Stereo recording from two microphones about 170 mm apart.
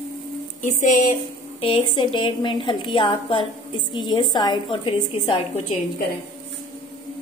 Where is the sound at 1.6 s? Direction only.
30° left (ahead or behind).